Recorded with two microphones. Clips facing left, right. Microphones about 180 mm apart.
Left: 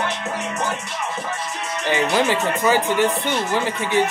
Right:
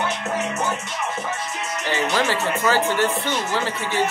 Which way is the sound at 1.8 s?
15° left (ahead or behind).